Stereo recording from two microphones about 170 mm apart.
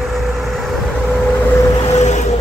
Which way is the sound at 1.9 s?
40° left (ahead or behind).